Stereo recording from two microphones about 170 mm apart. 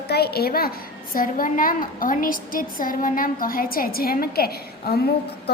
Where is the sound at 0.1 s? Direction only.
70° left (ahead or behind).